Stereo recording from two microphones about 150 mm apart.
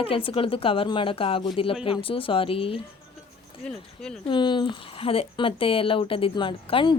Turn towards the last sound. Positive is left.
turn(degrees=35)  # may be behind; listen again after turning